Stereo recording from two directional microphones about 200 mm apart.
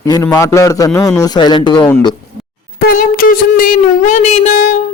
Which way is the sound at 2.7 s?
45° left (ahead or behind).